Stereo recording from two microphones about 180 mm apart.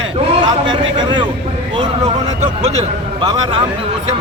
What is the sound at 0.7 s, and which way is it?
Speech, 25° right (ahead or behind).